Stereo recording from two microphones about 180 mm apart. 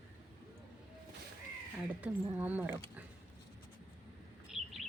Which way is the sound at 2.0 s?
10° right (ahead or behind).